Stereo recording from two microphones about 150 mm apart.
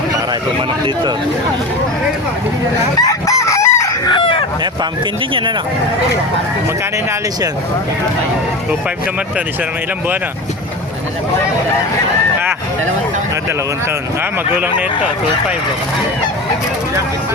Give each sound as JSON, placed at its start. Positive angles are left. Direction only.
{"t": 3.0, "sound": "chicken", "side_deg": 20}
{"t": 4.1, "sound": "chicken", "side_deg": 35}